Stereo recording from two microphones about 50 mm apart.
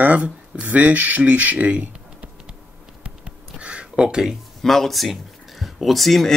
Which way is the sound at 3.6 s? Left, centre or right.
Right.